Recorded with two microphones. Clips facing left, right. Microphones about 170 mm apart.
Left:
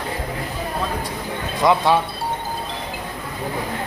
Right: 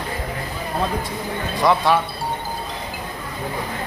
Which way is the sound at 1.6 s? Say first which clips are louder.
Left 1 dB; 20° left (ahead or behind).